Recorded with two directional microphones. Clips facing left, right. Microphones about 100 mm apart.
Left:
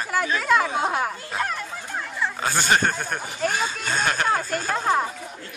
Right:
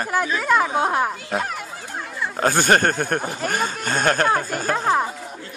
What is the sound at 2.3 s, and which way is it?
Speech, 45° right (ahead or behind).